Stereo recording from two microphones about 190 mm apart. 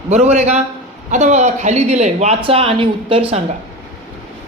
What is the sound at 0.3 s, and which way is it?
Speech, 35° right (ahead or behind).